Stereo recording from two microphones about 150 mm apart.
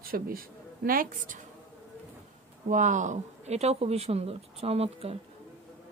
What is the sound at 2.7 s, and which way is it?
Speech, 55° right (ahead or behind).